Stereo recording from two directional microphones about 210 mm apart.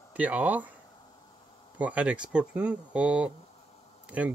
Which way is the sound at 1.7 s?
5° right (ahead or behind).